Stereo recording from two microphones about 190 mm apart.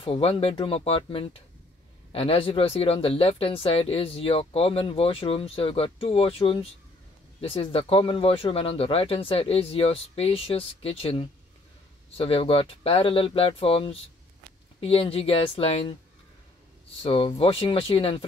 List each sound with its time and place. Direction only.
0.0 s speech: 30° left (ahead or behind)
17.0 s speech: 30° left (ahead or behind)